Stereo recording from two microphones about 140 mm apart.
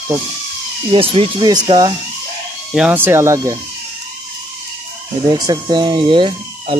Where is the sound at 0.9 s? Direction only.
40° right (ahead or behind).